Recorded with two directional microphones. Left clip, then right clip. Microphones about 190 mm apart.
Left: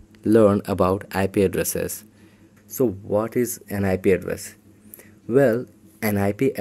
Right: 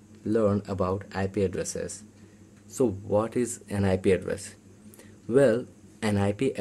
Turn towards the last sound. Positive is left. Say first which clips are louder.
# left 5 dB
turn(degrees=25)  # may be behind; listen again after turning